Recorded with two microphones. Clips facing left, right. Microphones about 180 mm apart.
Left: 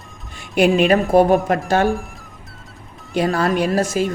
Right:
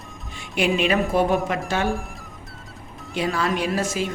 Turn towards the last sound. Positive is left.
turn(degrees=45)  # may be behind; listen again after turning